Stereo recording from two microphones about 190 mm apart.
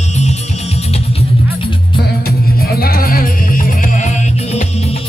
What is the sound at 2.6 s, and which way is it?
Music, 55° left (ahead or behind).